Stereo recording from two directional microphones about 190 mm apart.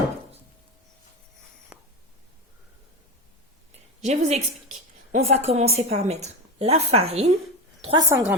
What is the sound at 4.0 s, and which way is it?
A woman's voice, 35° right (ahead or behind).